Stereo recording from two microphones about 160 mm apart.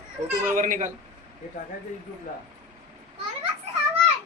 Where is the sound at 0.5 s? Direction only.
55° right (ahead or behind).